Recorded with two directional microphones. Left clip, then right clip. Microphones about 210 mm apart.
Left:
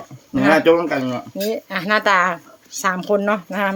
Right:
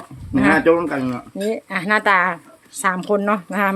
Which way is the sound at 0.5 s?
25° left (ahead or behind).